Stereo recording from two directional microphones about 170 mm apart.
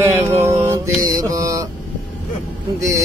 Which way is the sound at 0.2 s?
15° right (ahead or behind).